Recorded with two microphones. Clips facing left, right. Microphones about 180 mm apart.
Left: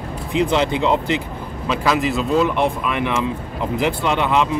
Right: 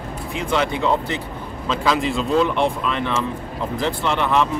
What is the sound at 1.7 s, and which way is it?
Speech, 5° left (ahead or behind).